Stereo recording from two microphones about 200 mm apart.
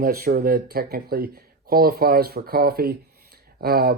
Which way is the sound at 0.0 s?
50° right (ahead or behind).